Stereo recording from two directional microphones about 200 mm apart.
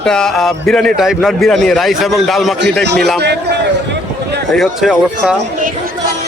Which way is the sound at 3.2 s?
55° right (ahead or behind).